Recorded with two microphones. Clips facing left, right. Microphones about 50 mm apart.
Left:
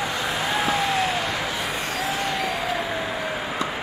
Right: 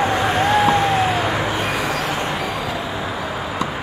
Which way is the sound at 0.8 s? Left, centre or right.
Right.